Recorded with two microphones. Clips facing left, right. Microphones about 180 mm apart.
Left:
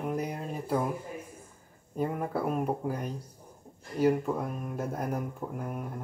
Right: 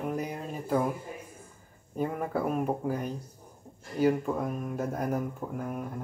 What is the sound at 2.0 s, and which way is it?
Speech, centre (ahead or behind).